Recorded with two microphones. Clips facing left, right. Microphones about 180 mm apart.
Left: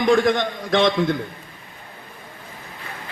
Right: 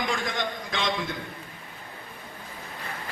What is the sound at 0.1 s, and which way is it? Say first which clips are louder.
Speech: left 12 dB; 65° left (ahead or behind).